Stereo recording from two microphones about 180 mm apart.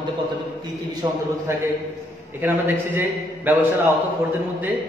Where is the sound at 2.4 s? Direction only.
10° right (ahead or behind).